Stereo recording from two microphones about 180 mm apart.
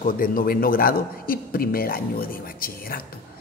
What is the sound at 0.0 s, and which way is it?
A man's voice, 50° left (ahead or behind).